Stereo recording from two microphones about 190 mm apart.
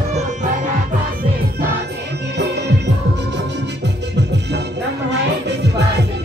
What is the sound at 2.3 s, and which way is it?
Music, 65° right (ahead or behind).